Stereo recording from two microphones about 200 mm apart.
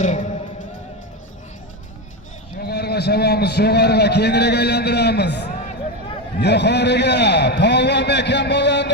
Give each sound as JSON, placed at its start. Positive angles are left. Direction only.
{"t": 0.0, "sound": "music", "side_deg": 40}
{"t": 2.6, "sound": "a man's voice", "side_deg": 55}